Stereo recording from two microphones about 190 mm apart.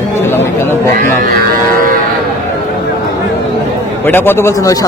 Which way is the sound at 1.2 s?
50° right (ahead or behind).